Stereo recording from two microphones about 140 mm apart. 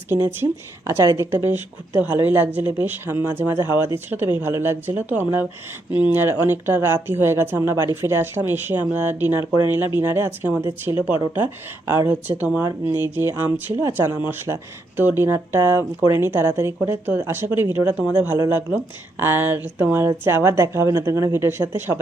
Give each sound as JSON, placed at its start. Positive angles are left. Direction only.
{"t": 0.1, "sound": "speech", "side_deg": -15}